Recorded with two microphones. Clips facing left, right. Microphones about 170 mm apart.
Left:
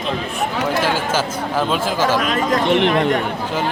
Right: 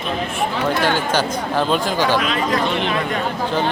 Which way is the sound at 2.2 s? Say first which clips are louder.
Left 2 dB; 45° left (ahead or behind).